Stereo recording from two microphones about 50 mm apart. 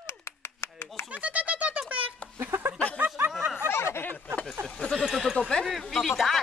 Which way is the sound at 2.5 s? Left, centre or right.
Right.